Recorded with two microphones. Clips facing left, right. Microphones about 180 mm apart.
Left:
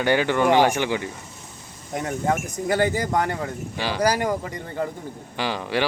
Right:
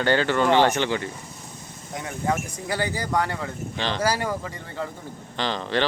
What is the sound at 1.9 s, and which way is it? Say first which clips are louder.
Speech: left 3 dB; 50° left (ahead or behind).